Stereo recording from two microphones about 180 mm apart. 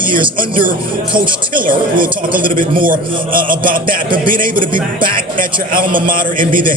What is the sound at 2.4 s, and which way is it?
Speech, 50° right (ahead or behind).